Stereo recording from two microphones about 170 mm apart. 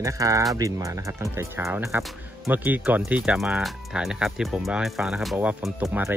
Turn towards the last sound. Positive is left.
turn(degrees=-5)  # may be behind; listen again after turning